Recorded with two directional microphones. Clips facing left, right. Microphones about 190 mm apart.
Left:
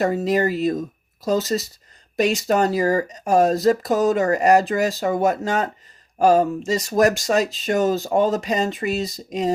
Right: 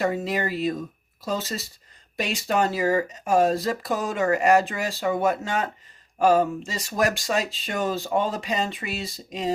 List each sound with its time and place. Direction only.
0.0 s speech: 40° left (ahead or behind)